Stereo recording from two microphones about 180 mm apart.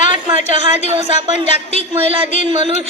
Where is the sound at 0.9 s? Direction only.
30° right (ahead or behind).